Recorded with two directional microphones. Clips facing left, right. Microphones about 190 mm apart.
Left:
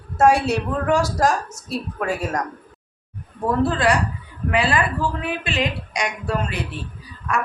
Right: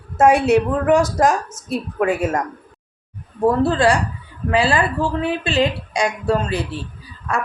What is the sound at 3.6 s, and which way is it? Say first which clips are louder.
A woman's voice: right 3 dB; 30° right (ahead or behind).